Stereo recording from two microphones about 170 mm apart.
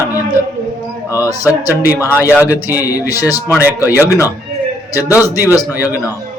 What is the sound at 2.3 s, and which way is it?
Speech, 10° right (ahead or behind).